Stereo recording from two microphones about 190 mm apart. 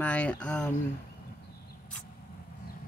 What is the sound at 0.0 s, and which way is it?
Speech, 5° left (ahead or behind).